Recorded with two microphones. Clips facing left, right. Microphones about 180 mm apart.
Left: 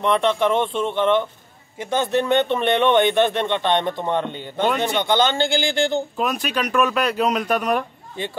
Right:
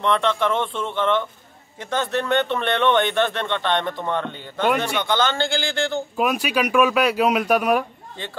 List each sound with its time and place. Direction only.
0.0 s speech: 15° left (ahead or behind)
6.1 s speech: 10° right (ahead or behind)